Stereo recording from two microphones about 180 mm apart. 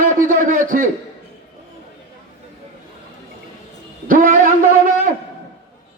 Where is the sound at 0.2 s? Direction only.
45° right (ahead or behind).